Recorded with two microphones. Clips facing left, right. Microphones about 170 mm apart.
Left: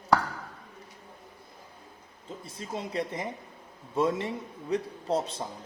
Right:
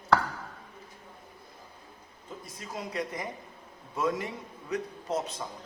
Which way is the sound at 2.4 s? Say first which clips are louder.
Left 3 dB; 30° left (ahead or behind).